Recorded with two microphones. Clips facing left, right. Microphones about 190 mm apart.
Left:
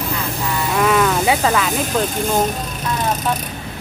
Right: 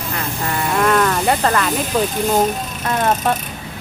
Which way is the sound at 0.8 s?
5° left (ahead or behind).